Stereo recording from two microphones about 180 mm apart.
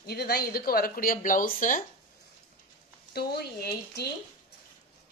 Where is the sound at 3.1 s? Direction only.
60° left (ahead or behind).